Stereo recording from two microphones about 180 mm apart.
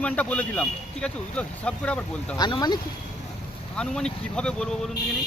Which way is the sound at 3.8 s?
5° left (ahead or behind).